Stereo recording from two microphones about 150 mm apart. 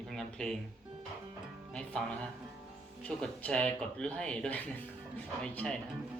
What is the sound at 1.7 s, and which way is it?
Speech, 5° left (ahead or behind).